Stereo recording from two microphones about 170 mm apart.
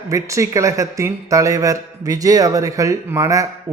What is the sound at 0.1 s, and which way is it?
Speech, 20° right (ahead or behind).